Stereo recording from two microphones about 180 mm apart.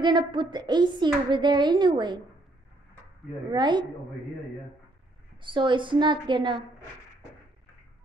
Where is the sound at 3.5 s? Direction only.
25° right (ahead or behind).